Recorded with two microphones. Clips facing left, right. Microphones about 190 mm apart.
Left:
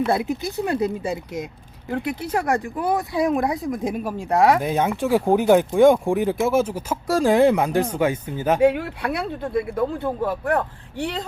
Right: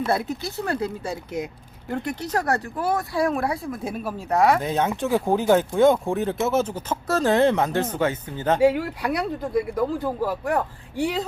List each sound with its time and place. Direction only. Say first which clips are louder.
0.0 s speech: left 3 dB; 15° left (ahead or behind)
1.1 s speech: left 1 dB; centre (ahead or behind)
8.6 s speech: even; centre (ahead or behind)